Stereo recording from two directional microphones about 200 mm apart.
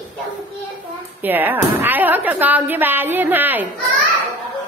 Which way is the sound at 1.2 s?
10° right (ahead or behind).